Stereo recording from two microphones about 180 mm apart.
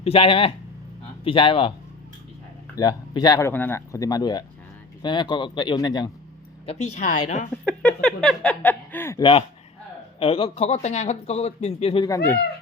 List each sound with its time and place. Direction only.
0.0 s speech: 30° left (ahead or behind)
2.7 s speech: 20° left (ahead or behind)
3.5 s speech: 10° left (ahead or behind)
6.7 s speech: 40° left (ahead or behind)
7.6 s speech: 5° left (ahead or behind)
10.2 s speech: 30° left (ahead or behind)